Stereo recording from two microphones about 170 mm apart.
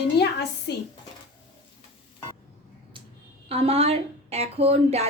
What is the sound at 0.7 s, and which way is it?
Speech, 90° left.